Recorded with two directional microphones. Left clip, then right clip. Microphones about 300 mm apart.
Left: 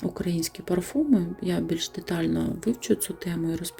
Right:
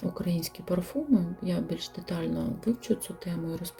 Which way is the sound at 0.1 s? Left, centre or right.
Centre.